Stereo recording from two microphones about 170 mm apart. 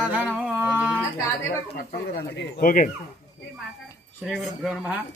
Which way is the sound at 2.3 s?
90° left.